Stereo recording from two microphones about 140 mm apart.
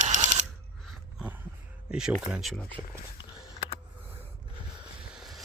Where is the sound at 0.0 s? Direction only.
60° right (ahead or behind).